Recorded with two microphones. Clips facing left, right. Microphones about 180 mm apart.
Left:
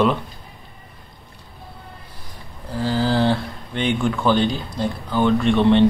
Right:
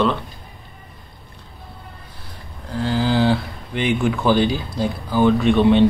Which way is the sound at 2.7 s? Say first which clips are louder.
Even; centre (ahead or behind).